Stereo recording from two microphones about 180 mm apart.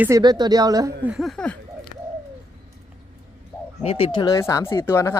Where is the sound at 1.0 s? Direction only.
Centre (ahead or behind).